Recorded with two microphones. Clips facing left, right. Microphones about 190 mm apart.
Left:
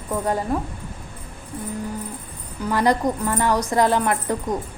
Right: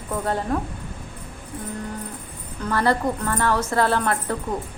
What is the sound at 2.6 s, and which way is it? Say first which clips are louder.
A woman's voice: left 2 dB; 15° left (ahead or behind).